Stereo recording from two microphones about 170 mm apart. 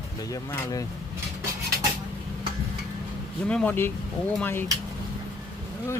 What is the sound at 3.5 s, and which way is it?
Speech, 10° left (ahead or behind).